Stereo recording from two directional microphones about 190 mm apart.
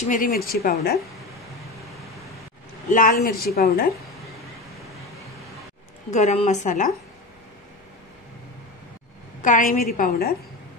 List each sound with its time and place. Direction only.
0.0 s speech: 45° left (ahead or behind)
2.9 s speech: 45° left (ahead or behind)
6.1 s a woman's voice: 35° left (ahead or behind)
9.4 s speech: 45° left (ahead or behind)